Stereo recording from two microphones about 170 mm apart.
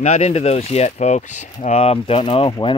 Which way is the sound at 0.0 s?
40° left (ahead or behind).